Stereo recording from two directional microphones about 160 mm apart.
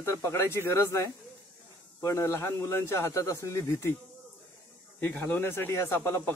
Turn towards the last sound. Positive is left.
turn(degrees=15)  # may be behind; listen again after turning